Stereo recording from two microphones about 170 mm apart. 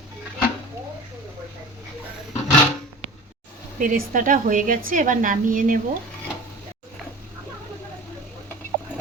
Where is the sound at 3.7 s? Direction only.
55° right (ahead or behind).